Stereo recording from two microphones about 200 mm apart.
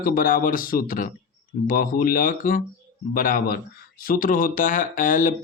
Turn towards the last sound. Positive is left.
turn(degrees=40)  # may be behind; listen again after turning